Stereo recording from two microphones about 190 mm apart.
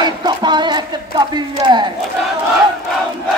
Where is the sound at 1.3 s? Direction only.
25° right (ahead or behind).